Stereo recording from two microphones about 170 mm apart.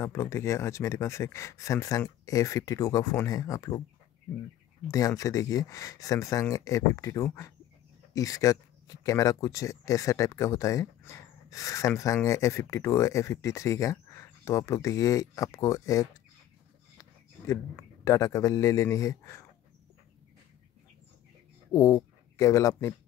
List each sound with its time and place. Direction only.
0.0 s speech: 15° left (ahead or behind)
4.8 s speech: 20° left (ahead or behind)
21.7 s speech: 20° left (ahead or behind)